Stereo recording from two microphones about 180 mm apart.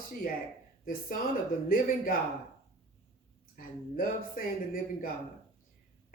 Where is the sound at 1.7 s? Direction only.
50° left (ahead or behind).